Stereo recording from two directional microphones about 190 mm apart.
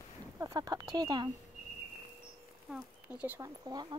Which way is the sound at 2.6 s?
5° right (ahead or behind).